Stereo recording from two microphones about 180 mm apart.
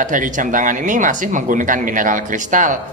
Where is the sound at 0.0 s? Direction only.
45° right (ahead or behind).